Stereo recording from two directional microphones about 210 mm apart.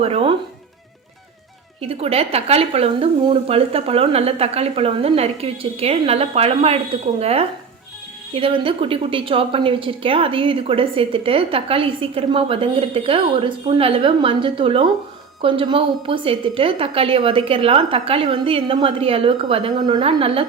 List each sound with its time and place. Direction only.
0.0 s a woman's voice: 30° right (ahead or behind)
1.8 s a woman's voice: 30° right (ahead or behind)